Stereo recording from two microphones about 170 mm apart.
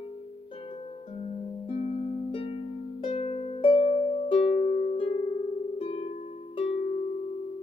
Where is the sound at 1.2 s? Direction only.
40° left (ahead or behind).